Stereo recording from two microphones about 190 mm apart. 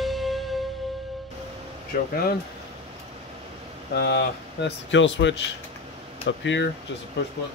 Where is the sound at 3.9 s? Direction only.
60° left (ahead or behind); by 6.6 s 75° left (ahead or behind).